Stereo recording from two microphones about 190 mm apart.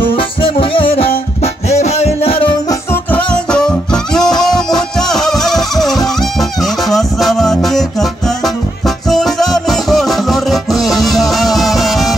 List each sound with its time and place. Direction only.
0.1 s music: 25° left (ahead or behind)
2.9 s music: 5° left (ahead or behind)